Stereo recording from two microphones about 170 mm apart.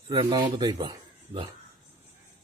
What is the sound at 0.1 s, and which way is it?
Speech, 25° right (ahead or behind).